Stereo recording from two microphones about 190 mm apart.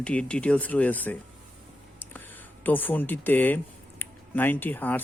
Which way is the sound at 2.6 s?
10° left (ahead or behind).